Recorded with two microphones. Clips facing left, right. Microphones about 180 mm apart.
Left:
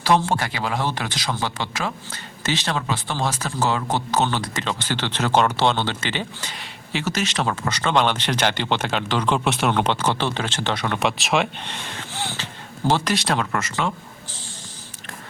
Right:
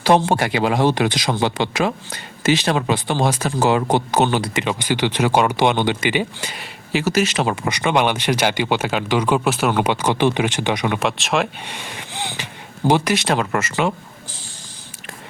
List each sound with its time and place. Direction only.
0.0 s speech: 20° right (ahead or behind)
11.0 s speech: centre (ahead or behind)
11.6 s gasp: 10° right (ahead or behind)
13.1 s speech: 5° right (ahead or behind)